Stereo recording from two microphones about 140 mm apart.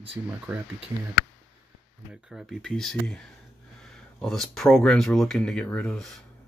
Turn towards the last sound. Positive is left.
turn(degrees=5)  # may be behind; listen again after turning